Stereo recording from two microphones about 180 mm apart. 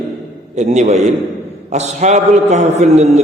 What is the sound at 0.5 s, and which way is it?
A man's voice, 40° right (ahead or behind).